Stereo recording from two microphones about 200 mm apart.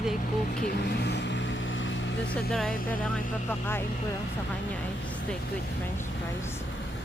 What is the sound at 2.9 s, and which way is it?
Speech, 10° left (ahead or behind).